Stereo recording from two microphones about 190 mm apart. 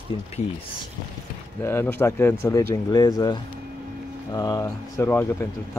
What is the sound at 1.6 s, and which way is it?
Speech, 15° left (ahead or behind).